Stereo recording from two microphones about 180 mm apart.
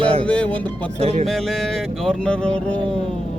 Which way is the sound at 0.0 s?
30° right (ahead or behind).